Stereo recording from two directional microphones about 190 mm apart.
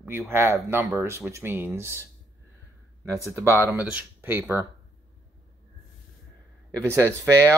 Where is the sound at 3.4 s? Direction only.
15° right (ahead or behind).